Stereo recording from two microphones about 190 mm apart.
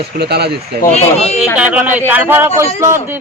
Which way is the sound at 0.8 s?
35° left (ahead or behind).